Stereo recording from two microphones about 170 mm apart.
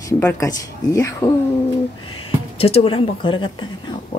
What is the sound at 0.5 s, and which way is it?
Speech, 20° left (ahead or behind).